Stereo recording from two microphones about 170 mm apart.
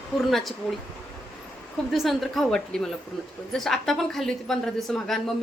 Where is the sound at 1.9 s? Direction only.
Centre (ahead or behind).